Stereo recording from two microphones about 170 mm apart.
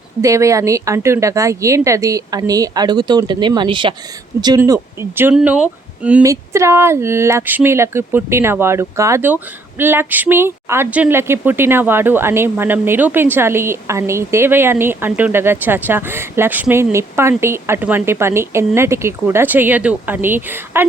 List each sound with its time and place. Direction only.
0.2 s speech: 20° right (ahead or behind)